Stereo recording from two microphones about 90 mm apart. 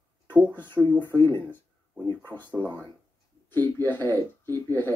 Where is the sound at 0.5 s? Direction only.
20° left (ahead or behind).